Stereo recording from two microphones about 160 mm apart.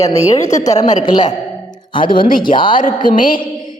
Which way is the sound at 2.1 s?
60° left (ahead or behind).